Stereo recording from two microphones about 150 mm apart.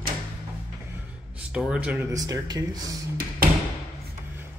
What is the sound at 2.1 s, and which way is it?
Speech, 25° right (ahead or behind).